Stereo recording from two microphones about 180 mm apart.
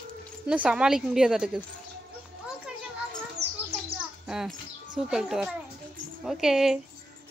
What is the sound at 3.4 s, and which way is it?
Bird, 65° right (ahead or behind).